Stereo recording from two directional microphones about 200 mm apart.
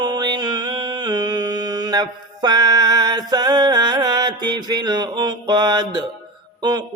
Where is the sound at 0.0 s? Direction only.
20° right (ahead or behind).